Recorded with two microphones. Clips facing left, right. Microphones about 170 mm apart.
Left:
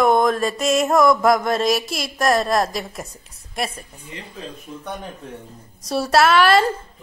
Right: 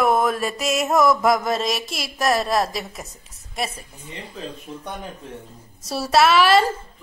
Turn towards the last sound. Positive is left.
turn(degrees=0)  # may be behind; listen again after turning